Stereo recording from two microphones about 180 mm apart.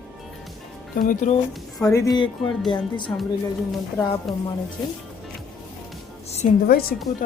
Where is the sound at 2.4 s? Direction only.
Centre (ahead or behind).